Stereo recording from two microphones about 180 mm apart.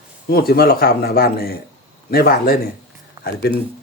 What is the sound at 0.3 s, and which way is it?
Speech, 60° left (ahead or behind).